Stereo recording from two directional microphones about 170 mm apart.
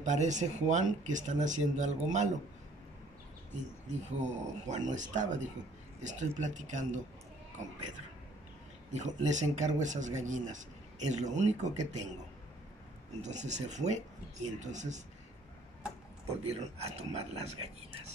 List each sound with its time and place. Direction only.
0.0 s speech: 45° right (ahead or behind)
4.2 s speech: 45° right (ahead or behind)
8.9 s speech: 45° right (ahead or behind)
13.2 s speech: 45° right (ahead or behind)
16.3 s speech: 40° right (ahead or behind)